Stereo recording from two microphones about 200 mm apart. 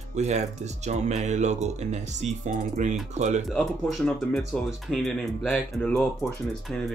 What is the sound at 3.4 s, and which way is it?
Speech, centre (ahead or behind).